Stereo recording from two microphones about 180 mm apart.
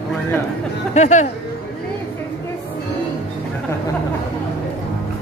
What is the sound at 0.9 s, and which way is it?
Speech, 40° left (ahead or behind).